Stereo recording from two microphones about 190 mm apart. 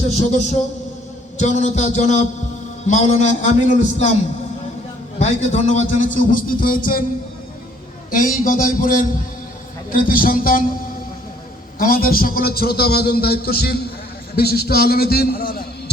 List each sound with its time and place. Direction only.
1.4 s a man's voice: 40° left (ahead or behind)
5.2 s a man's voice: 40° left (ahead or behind)
8.1 s a man's voice: 45° left (ahead or behind)
11.8 s a man's voice: 50° left (ahead or behind)